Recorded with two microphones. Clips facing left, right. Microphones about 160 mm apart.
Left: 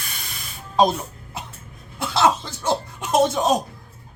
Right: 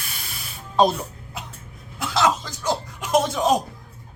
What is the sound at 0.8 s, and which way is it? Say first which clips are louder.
Music: even; 20° left (ahead or behind).